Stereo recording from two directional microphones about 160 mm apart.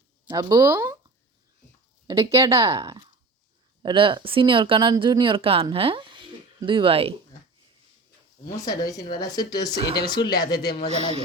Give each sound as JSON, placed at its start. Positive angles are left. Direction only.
{"t": 0.3, "sound": "speech", "side_deg": -20}
{"t": 2.0, "sound": "speech", "side_deg": -20}
{"t": 8.4, "sound": "speech", "side_deg": 25}
{"t": 10.8, "sound": "speech", "side_deg": -40}